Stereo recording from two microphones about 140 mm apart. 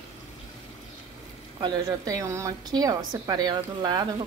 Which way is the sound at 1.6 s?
25° right (ahead or behind).